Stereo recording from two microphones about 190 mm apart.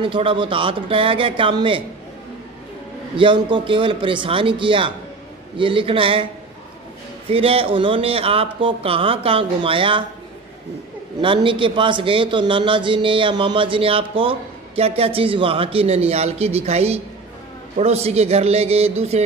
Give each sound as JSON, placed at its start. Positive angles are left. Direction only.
{"t": 0.0, "sound": "a man's voice", "side_deg": -25}
{"t": 3.2, "sound": "a man's voice", "side_deg": -25}
{"t": 7.2, "sound": "a man's voice", "side_deg": -30}
{"t": 11.1, "sound": "a man's voice", "side_deg": -25}